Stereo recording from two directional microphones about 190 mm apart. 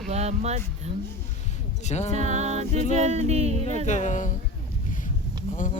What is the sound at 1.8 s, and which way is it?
Speech, 35° left (ahead or behind).